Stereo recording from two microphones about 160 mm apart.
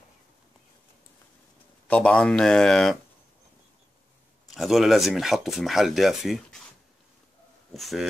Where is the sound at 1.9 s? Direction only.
5° left (ahead or behind).